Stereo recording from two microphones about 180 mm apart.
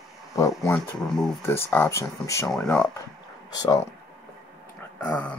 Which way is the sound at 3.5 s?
20° left (ahead or behind).